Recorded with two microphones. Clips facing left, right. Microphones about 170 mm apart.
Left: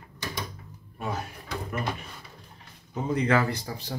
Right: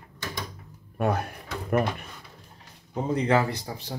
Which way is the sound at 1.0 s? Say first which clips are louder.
Right 7 dB; 60° right (ahead or behind).